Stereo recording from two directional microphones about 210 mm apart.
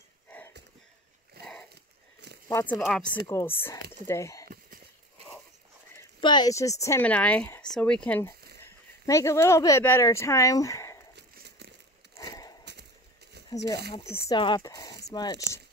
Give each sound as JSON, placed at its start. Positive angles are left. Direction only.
{"t": 2.4, "sound": "speech", "side_deg": 10}
{"t": 3.3, "sound": "speech", "side_deg": 10}
{"t": 5.9, "sound": "speech", "side_deg": 20}
{"t": 11.1, "sound": "a sound", "side_deg": -50}
{"t": 12.2, "sound": "a sound", "side_deg": 15}
{"t": 13.5, "sound": "speech", "side_deg": 15}